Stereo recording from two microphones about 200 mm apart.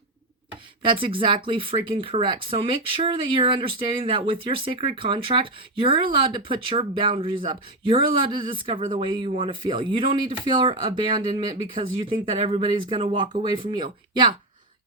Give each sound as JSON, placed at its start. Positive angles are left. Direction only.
{"t": 0.9, "sound": "speech", "side_deg": -25}